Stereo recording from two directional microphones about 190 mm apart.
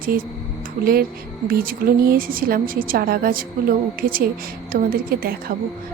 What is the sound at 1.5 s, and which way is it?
A woman's voice, 50° right (ahead or behind).